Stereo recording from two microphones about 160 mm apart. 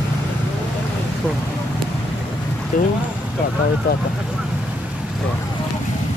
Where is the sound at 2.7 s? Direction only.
60° left (ahead or behind).